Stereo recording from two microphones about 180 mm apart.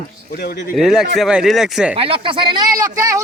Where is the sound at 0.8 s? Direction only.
Centre (ahead or behind).